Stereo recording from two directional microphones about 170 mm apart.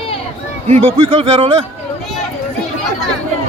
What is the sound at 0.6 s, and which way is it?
A man's voice, 35° right (ahead or behind).